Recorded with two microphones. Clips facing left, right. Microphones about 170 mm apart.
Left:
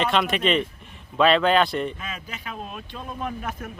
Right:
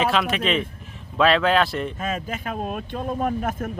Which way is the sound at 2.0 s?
45° right (ahead or behind).